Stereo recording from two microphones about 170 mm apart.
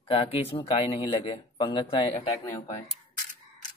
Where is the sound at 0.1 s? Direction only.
35° left (ahead or behind).